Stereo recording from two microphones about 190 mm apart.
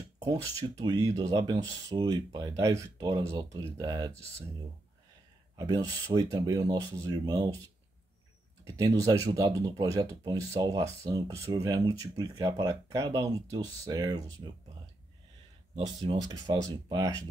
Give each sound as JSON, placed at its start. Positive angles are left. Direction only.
{"t": 0.2, "sound": "speech", "side_deg": -20}
{"t": 5.6, "sound": "speech", "side_deg": -20}
{"t": 8.6, "sound": "speech", "side_deg": -20}
{"t": 15.8, "sound": "speech", "side_deg": -20}